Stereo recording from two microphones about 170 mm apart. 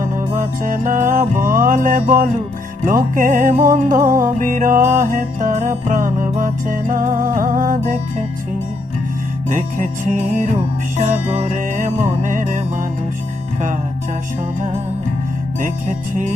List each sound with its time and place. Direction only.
0.4 s music: 50° right (ahead or behind)
9.5 s music: 50° right (ahead or behind)